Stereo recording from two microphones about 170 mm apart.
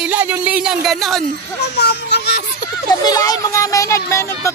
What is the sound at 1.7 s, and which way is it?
Speech, 75° left (ahead or behind).